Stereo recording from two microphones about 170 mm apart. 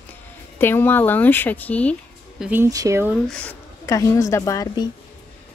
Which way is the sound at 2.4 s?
15° right (ahead or behind).